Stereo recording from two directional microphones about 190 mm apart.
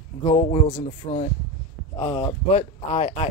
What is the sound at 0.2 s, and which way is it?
Speech, 30° left (ahead or behind).